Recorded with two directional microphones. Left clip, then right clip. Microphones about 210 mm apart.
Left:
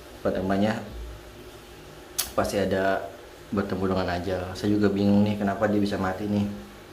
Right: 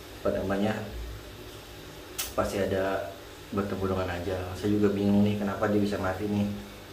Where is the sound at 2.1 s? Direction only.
35° left (ahead or behind).